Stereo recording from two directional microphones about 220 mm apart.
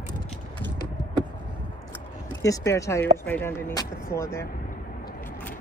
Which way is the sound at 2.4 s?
15° left (ahead or behind).